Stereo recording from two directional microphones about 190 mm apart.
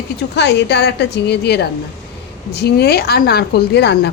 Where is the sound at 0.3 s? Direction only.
65° left (ahead or behind).